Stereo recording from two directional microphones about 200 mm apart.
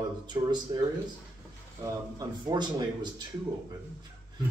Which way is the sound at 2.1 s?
20° right (ahead or behind).